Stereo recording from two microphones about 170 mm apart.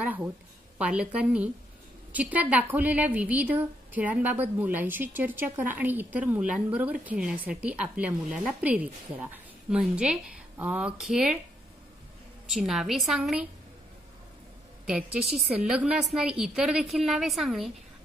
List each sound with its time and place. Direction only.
0.0 s a woman's voice: 10° right (ahead or behind)
12.4 s a woman's voice: centre (ahead or behind)
14.9 s a woman's voice: 5° right (ahead or behind)